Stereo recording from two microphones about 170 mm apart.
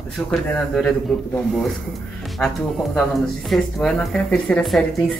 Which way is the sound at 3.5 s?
Centre (ahead or behind).